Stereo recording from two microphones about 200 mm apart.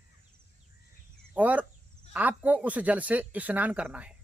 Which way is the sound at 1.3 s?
5° right (ahead or behind).